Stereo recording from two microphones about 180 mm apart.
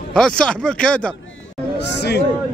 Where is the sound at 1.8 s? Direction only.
70° left (ahead or behind).